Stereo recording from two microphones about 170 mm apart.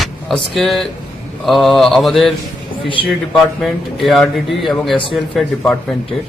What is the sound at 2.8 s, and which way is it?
Speech, 30° left (ahead or behind).